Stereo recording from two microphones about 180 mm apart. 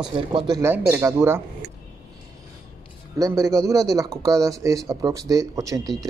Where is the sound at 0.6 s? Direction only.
10° right (ahead or behind).